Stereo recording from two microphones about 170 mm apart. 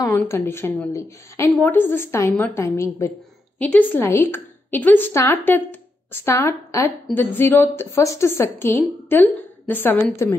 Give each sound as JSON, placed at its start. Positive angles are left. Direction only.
{"t": 0.0, "sound": "a woman's voice", "side_deg": 15}